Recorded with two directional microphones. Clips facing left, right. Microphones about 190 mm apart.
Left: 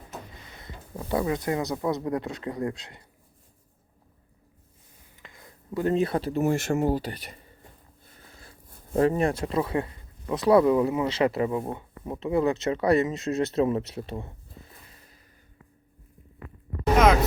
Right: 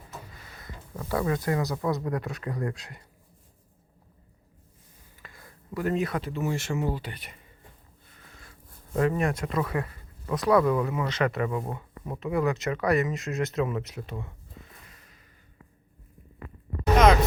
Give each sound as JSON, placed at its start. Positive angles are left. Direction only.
{"t": 0.1, "sound": "speech", "side_deg": 25}
{"t": 5.2, "sound": "a sound", "side_deg": 20}
{"t": 6.4, "sound": "speech", "side_deg": 50}